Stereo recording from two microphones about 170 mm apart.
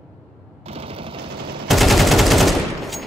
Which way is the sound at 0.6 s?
35° right (ahead or behind).